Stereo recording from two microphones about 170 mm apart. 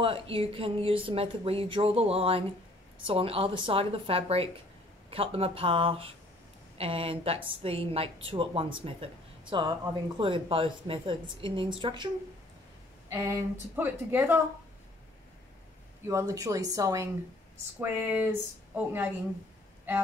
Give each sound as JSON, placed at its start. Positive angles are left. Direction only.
{"t": 0.0, "sound": "speech", "side_deg": -30}
{"t": 13.1, "sound": "a woman's voice", "side_deg": -15}
{"t": 16.1, "sound": "a woman's voice", "side_deg": -20}